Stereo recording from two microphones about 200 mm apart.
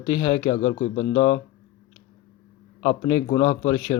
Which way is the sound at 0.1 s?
20° left (ahead or behind).